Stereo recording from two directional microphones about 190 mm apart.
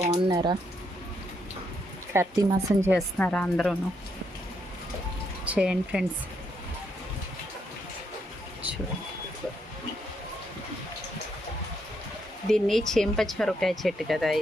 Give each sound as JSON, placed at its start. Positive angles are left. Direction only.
{"t": 0.1, "sound": "speech", "side_deg": -20}
{"t": 2.1, "sound": "speech", "side_deg": -20}
{"t": 3.2, "sound": "speech", "side_deg": 5}
{"t": 5.5, "sound": "speech", "side_deg": -5}
{"t": 12.5, "sound": "speech", "side_deg": 0}